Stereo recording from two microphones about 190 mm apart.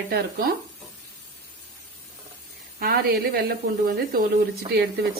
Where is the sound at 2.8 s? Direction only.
50° right (ahead or behind).